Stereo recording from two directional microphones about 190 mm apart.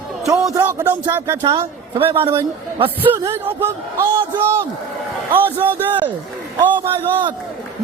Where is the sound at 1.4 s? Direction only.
25° right (ahead or behind).